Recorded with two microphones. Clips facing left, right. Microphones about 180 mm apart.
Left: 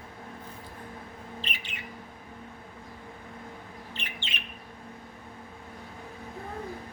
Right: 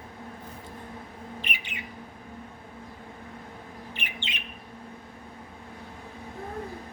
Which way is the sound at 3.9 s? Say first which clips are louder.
Right 1 dB; 15° right (ahead or behind).